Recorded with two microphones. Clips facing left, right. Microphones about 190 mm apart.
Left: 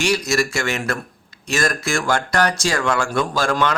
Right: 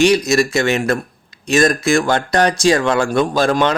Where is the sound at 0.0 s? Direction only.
20° right (ahead or behind).